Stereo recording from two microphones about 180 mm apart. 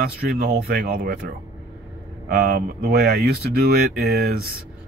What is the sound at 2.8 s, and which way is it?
Speech, 45° right (ahead or behind).